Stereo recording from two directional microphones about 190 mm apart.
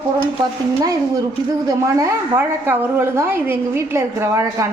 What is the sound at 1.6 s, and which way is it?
A woman's voice, 15° right (ahead or behind).